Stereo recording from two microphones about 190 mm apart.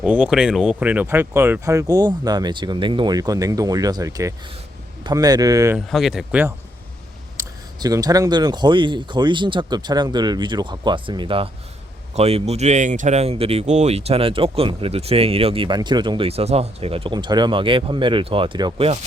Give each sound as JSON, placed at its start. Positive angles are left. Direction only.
{"t": 0.0, "sound": "speech", "side_deg": -5}
{"t": 5.7, "sound": "speech", "side_deg": 0}
{"t": 7.3, "sound": "speech", "side_deg": -20}